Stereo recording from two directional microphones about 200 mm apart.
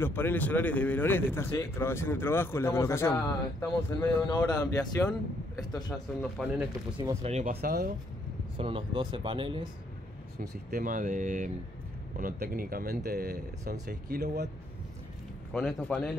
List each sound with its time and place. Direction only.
0.0 s speech: 10° left (ahead or behind)
5.9 s speech: centre (ahead or behind)
7.0 s speech: 30° right (ahead or behind); by 7.9 s 45° right (ahead or behind)
8.5 s speech: 25° right (ahead or behind)
10.4 s speech: 45° right (ahead or behind)
15.5 s speech: 5° left (ahead or behind)